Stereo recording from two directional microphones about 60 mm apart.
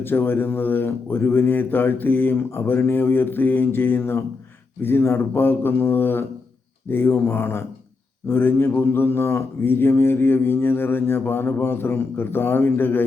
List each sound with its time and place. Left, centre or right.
0.0 s speech: left